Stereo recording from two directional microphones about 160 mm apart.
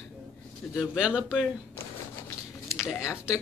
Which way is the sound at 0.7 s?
5° right (ahead or behind).